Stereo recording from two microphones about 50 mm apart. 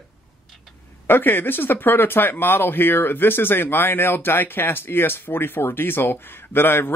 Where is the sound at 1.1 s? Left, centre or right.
Left.